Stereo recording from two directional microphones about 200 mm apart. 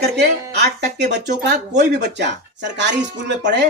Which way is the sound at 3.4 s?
55° right (ahead or behind).